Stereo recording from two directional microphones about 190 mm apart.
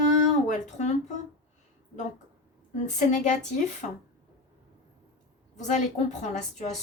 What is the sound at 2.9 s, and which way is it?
Speech, 40° left (ahead or behind).